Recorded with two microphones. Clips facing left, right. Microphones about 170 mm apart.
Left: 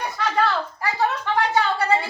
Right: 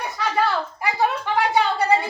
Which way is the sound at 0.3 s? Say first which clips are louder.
Right 1 dB; 15° right (ahead or behind).